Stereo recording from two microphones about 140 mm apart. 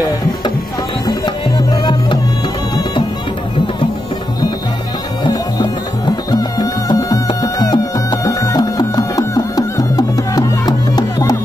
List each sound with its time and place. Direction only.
1.0 s music: 30° left (ahead or behind)
5.2 s music: 35° left (ahead or behind)